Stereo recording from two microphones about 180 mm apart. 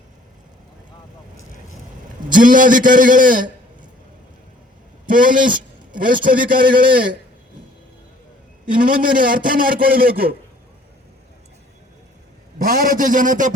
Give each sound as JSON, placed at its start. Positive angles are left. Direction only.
{"t": 2.3, "sound": "a man's voice", "side_deg": -50}
{"t": 5.0, "sound": "a man's voice", "side_deg": -50}
{"t": 8.7, "sound": "a man's voice", "side_deg": -50}
{"t": 12.5, "sound": "a man's voice", "side_deg": -55}